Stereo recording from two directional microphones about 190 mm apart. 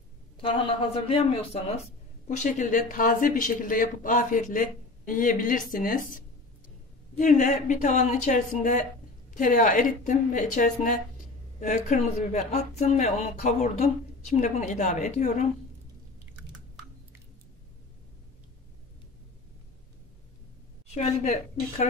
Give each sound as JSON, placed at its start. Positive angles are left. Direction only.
{"t": 0.4, "sound": "a woman's voice", "side_deg": 30}
{"t": 20.9, "sound": "speech", "side_deg": 35}